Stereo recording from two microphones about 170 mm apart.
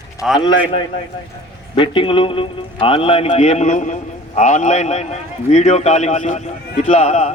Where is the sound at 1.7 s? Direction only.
30° left (ahead or behind).